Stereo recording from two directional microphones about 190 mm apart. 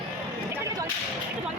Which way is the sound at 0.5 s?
15° right (ahead or behind).